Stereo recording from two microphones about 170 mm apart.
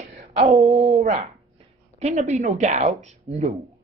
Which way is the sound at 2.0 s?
40° right (ahead or behind).